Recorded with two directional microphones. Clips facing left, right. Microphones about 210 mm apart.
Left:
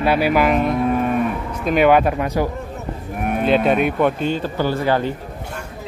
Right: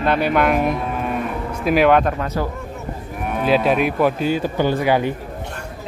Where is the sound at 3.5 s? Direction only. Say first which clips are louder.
Even; centre (ahead or behind).